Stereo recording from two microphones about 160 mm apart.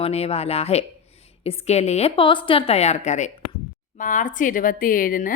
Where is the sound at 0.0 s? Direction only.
40° left (ahead or behind).